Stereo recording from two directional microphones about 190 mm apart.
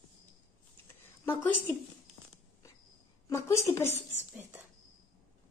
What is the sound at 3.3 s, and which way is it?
Speech, 15° left (ahead or behind).